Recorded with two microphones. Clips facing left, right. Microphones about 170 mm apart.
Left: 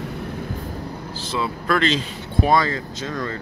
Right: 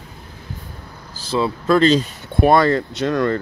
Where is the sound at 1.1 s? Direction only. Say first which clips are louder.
Right 6 dB; 30° right (ahead or behind).